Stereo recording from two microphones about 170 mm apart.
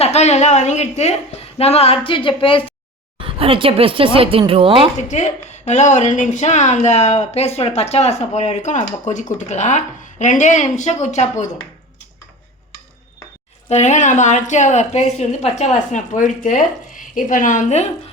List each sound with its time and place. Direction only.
0.0 s a woman's voice: 40° left (ahead or behind)
3.2 s speech: 30° right (ahead or behind)
4.9 s speech: 45° left (ahead or behind)
13.7 s speech: 40° left (ahead or behind)